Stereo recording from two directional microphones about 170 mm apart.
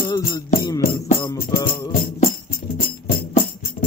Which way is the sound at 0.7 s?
25° left (ahead or behind).